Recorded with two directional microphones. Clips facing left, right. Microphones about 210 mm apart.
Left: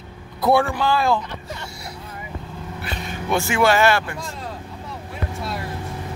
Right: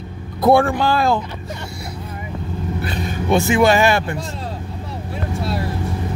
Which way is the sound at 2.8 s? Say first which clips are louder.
Right 6 dB; 40° right (ahead or behind).